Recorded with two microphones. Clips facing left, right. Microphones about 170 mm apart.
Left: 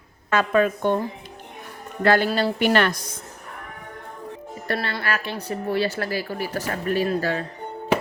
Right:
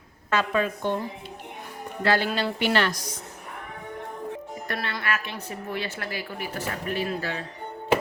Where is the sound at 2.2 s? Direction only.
40° left (ahead or behind).